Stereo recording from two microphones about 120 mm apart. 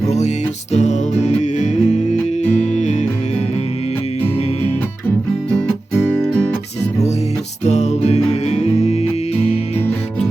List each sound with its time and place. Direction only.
0.7 s music: 75° left (ahead or behind); by 2.0 s 90° left
2.7 s music: 75° left (ahead or behind)
6.1 s music: 5° left (ahead or behind)
7.6 s music: 70° left (ahead or behind)